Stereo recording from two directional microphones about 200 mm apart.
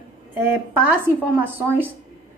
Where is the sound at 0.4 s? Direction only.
10° right (ahead or behind).